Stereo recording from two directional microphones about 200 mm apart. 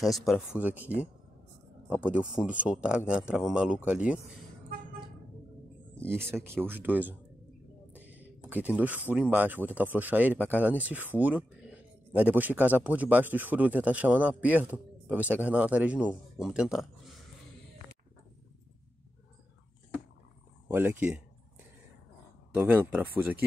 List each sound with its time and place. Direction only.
0.0 s speech: centre (ahead or behind)
6.0 s speech: 10° right (ahead or behind)
20.6 s speech: 10° right (ahead or behind)
22.6 s speech: 10° right (ahead or behind)